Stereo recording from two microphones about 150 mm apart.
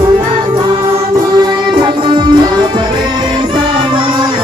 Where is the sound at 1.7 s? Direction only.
30° right (ahead or behind).